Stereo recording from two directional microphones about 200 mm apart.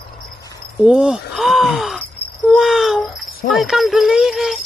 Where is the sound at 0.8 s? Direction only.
5° right (ahead or behind).